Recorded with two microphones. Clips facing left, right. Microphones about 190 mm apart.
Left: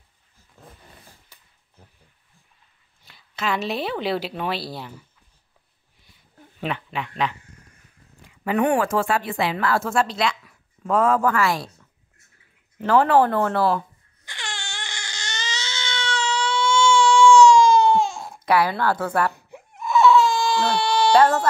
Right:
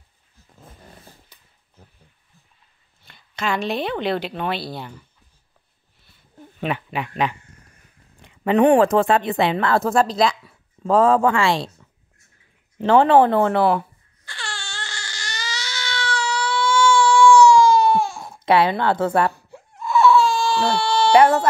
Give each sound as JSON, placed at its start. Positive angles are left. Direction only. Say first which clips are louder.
{"t": 3.1, "sound": "a woman's voice", "louder": "right 1 dB", "side_deg": 0}
{"t": 6.7, "sound": "speech", "louder": "right 4 dB", "side_deg": -10}
{"t": 8.5, "sound": "a woman's voice", "louder": "right 6 dB", "side_deg": -25}
{"t": 14.2, "sound": "crying", "louder": "right 1 dB", "side_deg": 20}
{"t": 18.4, "sound": "a woman's voice", "louder": "right 3 dB", "side_deg": -25}
{"t": 19.3, "sound": "baby cry", "louder": "even", "side_deg": 15}
{"t": 20.7, "sound": "a sound", "louder": "right 1 dB", "side_deg": 15}
{"t": 21.1, "sound": "speech", "louder": "right 3 dB", "side_deg": -15}